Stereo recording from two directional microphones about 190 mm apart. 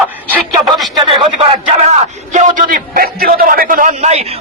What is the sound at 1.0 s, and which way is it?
A man's voice, 30° right (ahead or behind).